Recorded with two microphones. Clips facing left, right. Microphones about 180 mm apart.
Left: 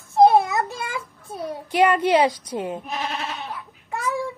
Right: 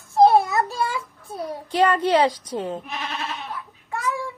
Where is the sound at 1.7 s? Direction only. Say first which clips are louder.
Left 1 dB; 15° left (ahead or behind).